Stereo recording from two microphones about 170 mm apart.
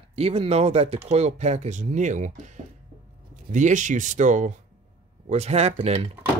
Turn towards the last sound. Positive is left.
turn(degrees=-40)  # may be behind; listen again after turning